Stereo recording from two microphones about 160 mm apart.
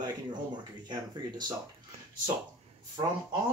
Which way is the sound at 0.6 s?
25° right (ahead or behind).